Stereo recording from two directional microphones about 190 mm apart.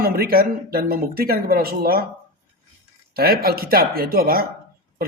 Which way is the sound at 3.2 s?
55° right (ahead or behind).